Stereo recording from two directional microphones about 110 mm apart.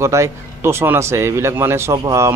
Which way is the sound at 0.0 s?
25° right (ahead or behind).